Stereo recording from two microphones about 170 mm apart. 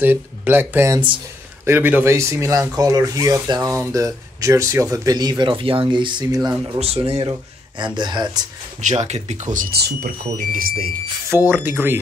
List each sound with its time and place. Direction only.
0.0 s speech: 10° right (ahead or behind)
6.8 s speech: 35° right (ahead or behind)
8.8 s speech: 40° right (ahead or behind)
9.8 s speech: 75° right (ahead or behind)
10.3 s speech: 55° right (ahead or behind)
11.2 s speech: 10° right (ahead or behind)